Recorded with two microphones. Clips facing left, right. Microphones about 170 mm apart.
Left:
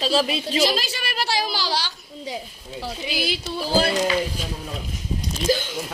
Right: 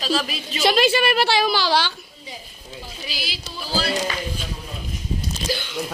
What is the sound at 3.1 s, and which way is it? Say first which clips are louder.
Music: left 9 dB; 55° left (ahead or behind).